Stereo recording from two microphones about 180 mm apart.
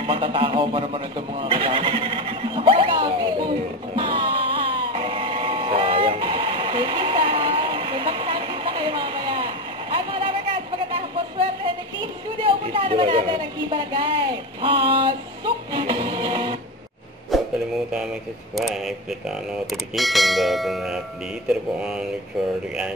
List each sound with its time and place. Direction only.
0.0 s a sound: 30° right (ahead or behind)
12.4 s a woman's voice: 30° right (ahead or behind)
14.6 s music: 30° right (ahead or behind)
17.3 s radio: centre (ahead or behind)
18.5 s speech: centre (ahead or behind)